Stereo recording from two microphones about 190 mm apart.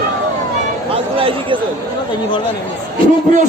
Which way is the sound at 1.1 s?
30° right (ahead or behind).